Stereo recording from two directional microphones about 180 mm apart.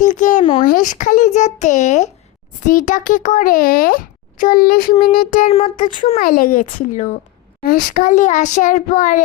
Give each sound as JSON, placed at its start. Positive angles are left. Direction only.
{"t": 0.0, "sound": "a sound", "side_deg": 45}
{"t": 0.6, "sound": "a child's voice", "side_deg": 45}
{"t": 5.5, "sound": "a child's voice", "side_deg": 40}